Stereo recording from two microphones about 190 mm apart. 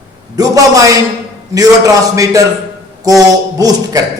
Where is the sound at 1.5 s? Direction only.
20° right (ahead or behind).